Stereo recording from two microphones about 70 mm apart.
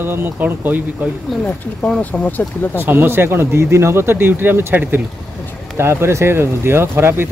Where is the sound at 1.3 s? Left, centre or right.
Centre.